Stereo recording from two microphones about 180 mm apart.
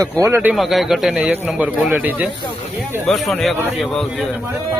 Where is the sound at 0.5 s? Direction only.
Centre (ahead or behind).